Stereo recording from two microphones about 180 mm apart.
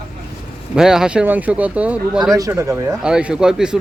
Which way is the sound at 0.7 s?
5° right (ahead or behind).